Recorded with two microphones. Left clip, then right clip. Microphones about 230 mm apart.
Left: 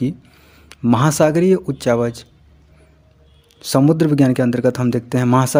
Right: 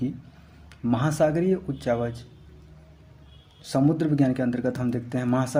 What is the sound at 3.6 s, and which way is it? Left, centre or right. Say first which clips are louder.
A man's voice: left 9 dB; left.